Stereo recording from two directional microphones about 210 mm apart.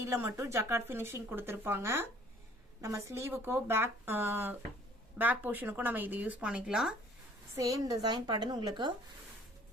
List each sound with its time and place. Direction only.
0.1 s speech: 10° right (ahead or behind)
7.5 s a woman's voice: 15° right (ahead or behind)